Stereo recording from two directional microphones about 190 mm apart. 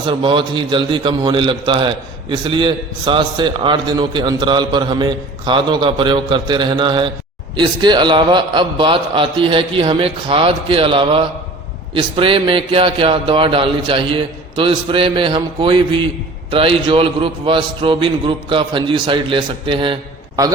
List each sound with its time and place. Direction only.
0.1 s a man's voice: 25° right (ahead or behind)